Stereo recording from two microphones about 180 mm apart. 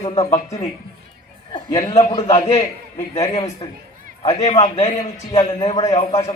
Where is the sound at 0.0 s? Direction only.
35° left (ahead or behind).